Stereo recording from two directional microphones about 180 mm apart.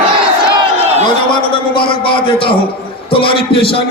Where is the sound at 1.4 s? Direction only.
30° left (ahead or behind).